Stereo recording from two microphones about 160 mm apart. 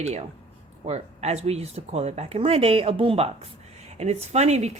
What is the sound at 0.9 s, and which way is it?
A woman's voice, 40° right (ahead or behind).